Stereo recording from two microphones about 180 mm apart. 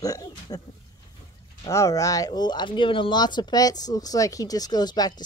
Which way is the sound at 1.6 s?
20° left (ahead or behind).